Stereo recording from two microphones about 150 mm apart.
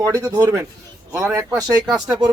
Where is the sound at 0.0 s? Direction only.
25° right (ahead or behind).